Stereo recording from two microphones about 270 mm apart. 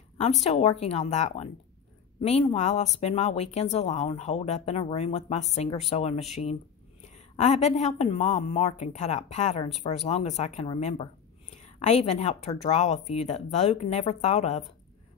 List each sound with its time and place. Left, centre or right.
0.4 s a woman's voice: left